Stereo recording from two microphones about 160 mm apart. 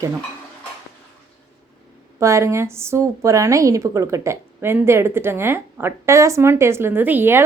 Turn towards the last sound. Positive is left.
turn(degrees=-15)  # may be behind; listen again after turning